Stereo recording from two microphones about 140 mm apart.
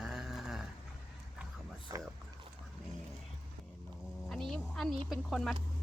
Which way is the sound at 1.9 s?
25° right (ahead or behind).